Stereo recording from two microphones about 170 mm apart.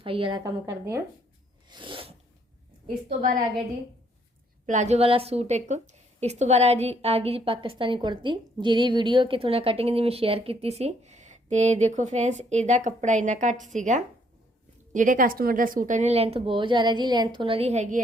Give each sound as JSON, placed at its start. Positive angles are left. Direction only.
{"t": 0.0, "sound": "a woman's voice", "side_deg": -30}
{"t": 1.7, "sound": "a sound", "side_deg": -30}
{"t": 4.6, "sound": "a woman's voice", "side_deg": -45}